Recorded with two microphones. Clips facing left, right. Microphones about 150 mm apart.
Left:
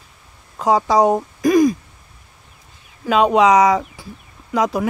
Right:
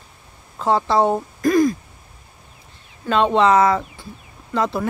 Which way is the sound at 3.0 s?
10° left (ahead or behind).